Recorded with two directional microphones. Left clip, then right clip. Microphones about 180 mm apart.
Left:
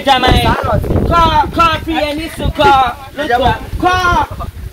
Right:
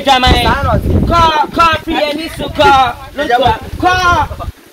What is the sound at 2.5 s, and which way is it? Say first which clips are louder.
Speech: right 1 dB; 20° right (ahead or behind).